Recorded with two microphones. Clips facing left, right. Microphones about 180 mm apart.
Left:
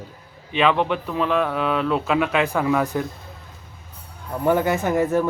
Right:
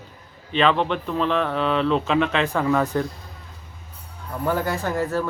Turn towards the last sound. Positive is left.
turn(degrees=20)  # may be behind; listen again after turning